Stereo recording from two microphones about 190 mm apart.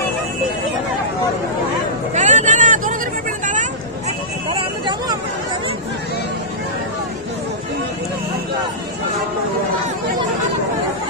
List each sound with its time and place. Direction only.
2.1 s vehicle: 40° right (ahead or behind)
4.5 s vehicle: 25° right (ahead or behind)